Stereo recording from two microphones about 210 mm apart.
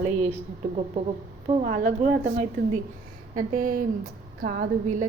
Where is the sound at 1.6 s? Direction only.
45° right (ahead or behind).